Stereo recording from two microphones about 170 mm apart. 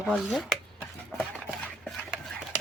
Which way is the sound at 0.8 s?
10° left (ahead or behind).